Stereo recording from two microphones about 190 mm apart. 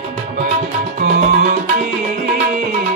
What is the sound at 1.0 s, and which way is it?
Music, 45° right (ahead or behind).